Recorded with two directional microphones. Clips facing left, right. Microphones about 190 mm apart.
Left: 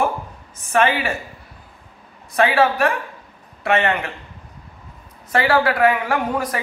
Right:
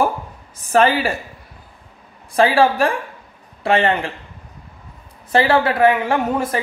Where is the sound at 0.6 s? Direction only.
35° right (ahead or behind).